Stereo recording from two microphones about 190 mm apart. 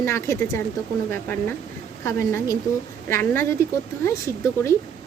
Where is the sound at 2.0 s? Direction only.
15° left (ahead or behind).